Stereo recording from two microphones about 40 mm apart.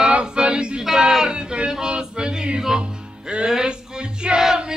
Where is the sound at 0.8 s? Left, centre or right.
Centre.